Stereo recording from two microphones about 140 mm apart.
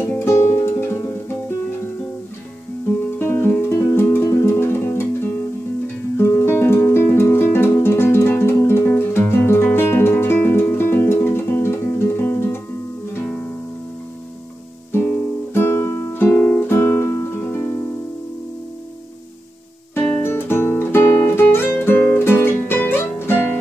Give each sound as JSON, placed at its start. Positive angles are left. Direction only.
{"t": 0.0, "sound": "music", "side_deg": 15}
{"t": 3.2, "sound": "music", "side_deg": 15}
{"t": 6.1, "sound": "music", "side_deg": 15}
{"t": 15.5, "sound": "music", "side_deg": 15}
{"t": 19.9, "sound": "music", "side_deg": 15}